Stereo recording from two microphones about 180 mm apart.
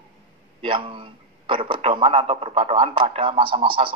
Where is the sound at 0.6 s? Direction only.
30° right (ahead or behind).